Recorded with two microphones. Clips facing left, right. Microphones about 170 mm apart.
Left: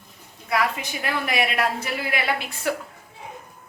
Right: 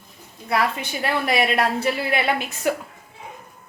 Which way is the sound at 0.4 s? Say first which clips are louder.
Right 2 dB; 30° right (ahead or behind).